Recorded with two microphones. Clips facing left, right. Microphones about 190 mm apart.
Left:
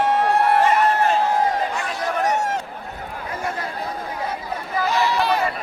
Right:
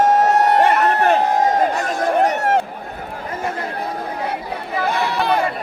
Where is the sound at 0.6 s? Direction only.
60° right (ahead or behind).